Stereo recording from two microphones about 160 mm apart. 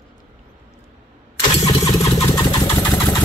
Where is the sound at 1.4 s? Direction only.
20° left (ahead or behind).